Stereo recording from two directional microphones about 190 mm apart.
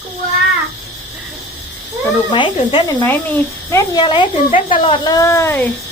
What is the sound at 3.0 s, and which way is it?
Speech, 15° left (ahead or behind).